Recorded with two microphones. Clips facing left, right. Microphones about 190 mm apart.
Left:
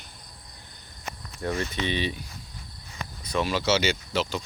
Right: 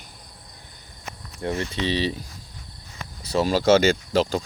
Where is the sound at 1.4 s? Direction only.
25° right (ahead or behind).